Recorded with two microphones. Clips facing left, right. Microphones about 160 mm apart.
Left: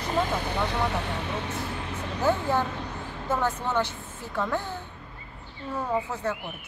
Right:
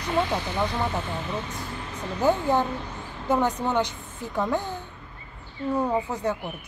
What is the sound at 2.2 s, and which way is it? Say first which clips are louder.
Speech: right 3 dB; 15° right (ahead or behind).